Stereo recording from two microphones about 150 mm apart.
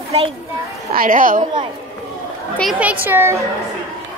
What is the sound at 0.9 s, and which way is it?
Speech, 70° right (ahead or behind).